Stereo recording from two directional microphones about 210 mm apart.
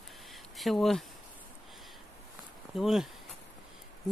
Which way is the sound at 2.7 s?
Centre (ahead or behind).